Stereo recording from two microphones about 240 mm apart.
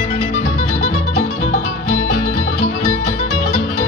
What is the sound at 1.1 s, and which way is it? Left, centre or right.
Music, left.